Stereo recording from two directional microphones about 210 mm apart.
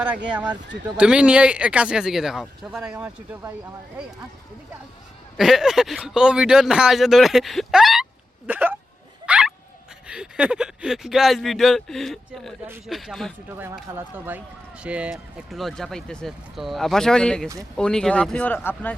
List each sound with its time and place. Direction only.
0.3 s speech: 5° right (ahead or behind)
5.4 s speech: centre (ahead or behind)
12.6 s speech: 10° right (ahead or behind)
12.9 s speech: centre (ahead or behind)
13.8 s speech: 10° right (ahead or behind); by 18.9 s 10° left (ahead or behind)